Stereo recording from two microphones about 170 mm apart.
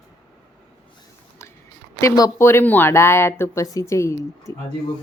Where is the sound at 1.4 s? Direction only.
15° left (ahead or behind).